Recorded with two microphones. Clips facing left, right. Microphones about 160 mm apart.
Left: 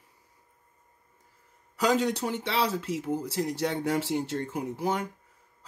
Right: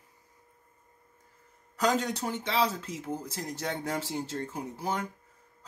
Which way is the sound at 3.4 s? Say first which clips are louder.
Left 2 dB; 40° right (ahead or behind).